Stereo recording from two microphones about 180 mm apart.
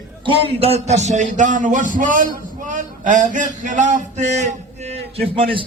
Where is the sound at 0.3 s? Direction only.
35° right (ahead or behind).